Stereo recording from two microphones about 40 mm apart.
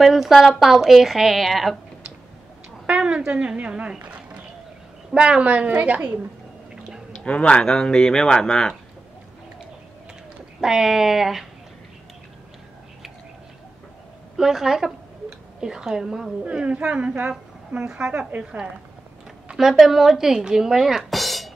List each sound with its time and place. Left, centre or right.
0.0 s a woman's voice: centre
2.9 s a woman's voice: right
4.0 s a sound: right
5.1 s a woman's voice: right
5.4 s a woman's voice: right
7.2 s a man's voice: left
7.6 s speech: centre
10.6 s speech: centre
14.3 s a woman's voice: centre
16.4 s a woman's voice: right
19.5 s speech: centre